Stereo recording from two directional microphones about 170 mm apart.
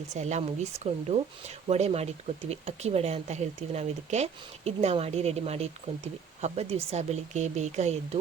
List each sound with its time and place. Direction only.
0.1 s speech: 40° right (ahead or behind)